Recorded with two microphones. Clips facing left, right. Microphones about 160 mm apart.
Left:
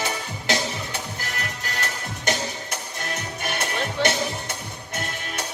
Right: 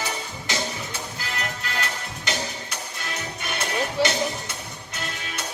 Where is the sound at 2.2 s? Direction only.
50° left (ahead or behind).